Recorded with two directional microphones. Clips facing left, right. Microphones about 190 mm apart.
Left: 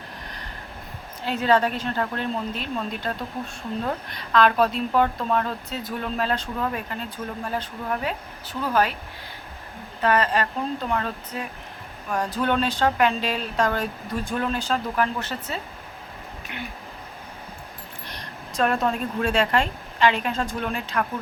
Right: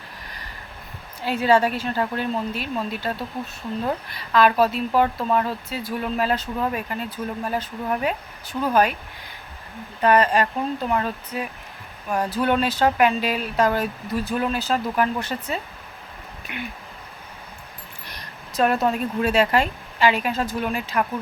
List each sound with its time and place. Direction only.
1.2 s speech: 10° right (ahead or behind)
10.0 s speech: 15° right (ahead or behind)
18.0 s speech: 10° right (ahead or behind)